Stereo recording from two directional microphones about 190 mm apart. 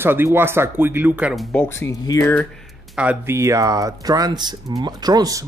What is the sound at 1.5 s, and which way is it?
Speech, 10° left (ahead or behind).